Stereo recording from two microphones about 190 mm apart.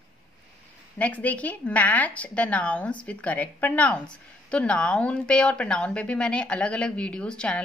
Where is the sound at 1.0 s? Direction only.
10° left (ahead or behind).